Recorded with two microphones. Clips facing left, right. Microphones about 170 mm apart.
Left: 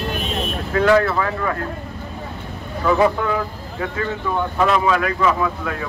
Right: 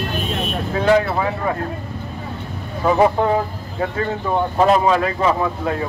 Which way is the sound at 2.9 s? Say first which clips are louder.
Right 2 dB; 35° right (ahead or behind).